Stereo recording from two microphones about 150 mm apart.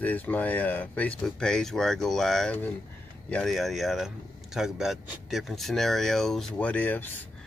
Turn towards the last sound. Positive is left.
turn(degrees=10)  # may be behind; listen again after turning